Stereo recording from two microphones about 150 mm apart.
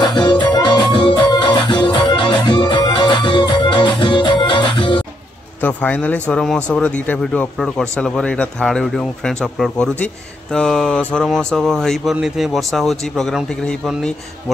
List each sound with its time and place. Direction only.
0.0 s music: 30° left (ahead or behind)
5.6 s speech: 10° left (ahead or behind)